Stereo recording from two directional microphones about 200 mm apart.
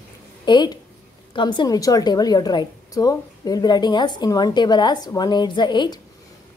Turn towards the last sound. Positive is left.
turn(degrees=20)  # may be behind; listen again after turning